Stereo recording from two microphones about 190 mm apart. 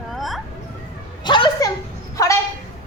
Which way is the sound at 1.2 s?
25° left (ahead or behind).